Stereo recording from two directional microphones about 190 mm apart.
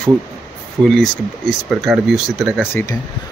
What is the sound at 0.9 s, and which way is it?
Speech, centre (ahead or behind).